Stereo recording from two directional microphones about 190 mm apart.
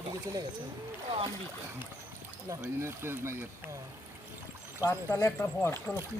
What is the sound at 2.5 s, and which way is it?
Speech, 15° right (ahead or behind).